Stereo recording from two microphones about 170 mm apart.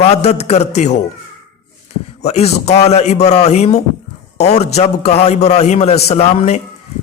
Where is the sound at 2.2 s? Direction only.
40° left (ahead or behind).